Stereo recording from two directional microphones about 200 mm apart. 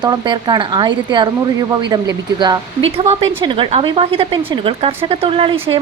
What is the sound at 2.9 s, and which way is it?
A woman's voice, 30° right (ahead or behind).